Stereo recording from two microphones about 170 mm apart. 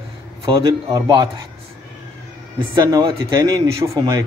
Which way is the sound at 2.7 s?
20° right (ahead or behind).